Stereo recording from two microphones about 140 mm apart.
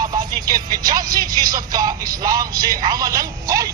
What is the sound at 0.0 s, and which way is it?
Speech, 30° right (ahead or behind).